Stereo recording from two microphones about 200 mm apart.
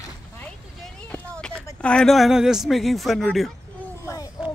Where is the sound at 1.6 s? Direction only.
5° left (ahead or behind).